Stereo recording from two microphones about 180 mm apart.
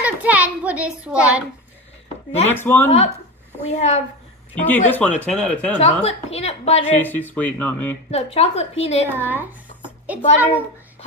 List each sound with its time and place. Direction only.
0.0 s a sound: 10° right (ahead or behind)
2.5 s speech: 10° left (ahead or behind)
3.6 s a woman's voice: 40° left (ahead or behind)
4.6 s speech: 10° left (ahead or behind)
5.8 s a woman's voice: 35° left (ahead or behind)
6.9 s speech: 10° left (ahead or behind)
8.1 s a woman's voice: 35° left (ahead or behind)
9.2 s a child's voice: 10° right (ahead or behind)